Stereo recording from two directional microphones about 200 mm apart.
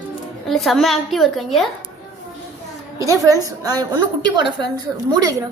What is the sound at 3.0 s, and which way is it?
A woman's voice, 15° right (ahead or behind).